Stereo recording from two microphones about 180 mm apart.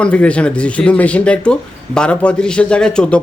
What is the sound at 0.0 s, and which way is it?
Speech, 5° left (ahead or behind).